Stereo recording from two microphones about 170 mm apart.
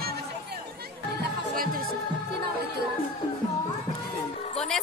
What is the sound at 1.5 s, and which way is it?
Music, 55° right (ahead or behind).